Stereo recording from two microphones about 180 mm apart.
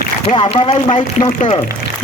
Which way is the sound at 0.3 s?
25° left (ahead or behind).